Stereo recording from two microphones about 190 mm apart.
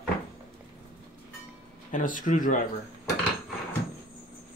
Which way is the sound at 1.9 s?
45° left (ahead or behind).